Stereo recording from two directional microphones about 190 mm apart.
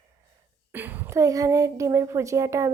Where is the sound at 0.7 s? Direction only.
10° right (ahead or behind).